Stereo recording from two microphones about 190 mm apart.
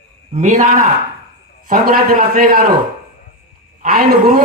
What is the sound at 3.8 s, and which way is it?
Speech, 50° right (ahead or behind).